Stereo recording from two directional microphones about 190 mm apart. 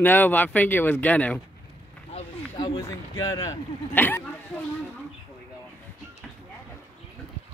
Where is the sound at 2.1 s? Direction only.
30° left (ahead or behind); by 4.2 s 10° left (ahead or behind).